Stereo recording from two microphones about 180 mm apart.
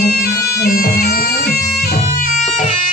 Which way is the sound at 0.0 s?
65° left (ahead or behind).